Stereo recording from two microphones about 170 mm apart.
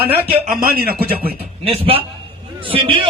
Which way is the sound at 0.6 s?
60° right (ahead or behind).